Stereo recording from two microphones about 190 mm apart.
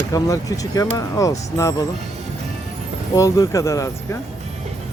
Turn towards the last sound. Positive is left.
turn(degrees=15)  # may be behind; listen again after turning